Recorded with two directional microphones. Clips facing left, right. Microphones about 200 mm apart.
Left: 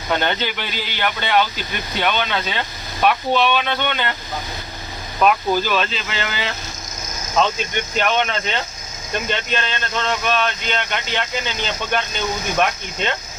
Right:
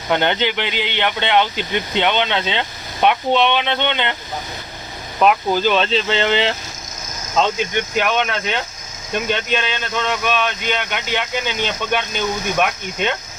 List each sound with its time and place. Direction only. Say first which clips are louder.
0.1 s speech: right 3 dB; 20° right (ahead or behind)
5.2 s speech: right 2 dB; 20° right (ahead or behind)
7.9 s speech: even; 5° right (ahead or behind)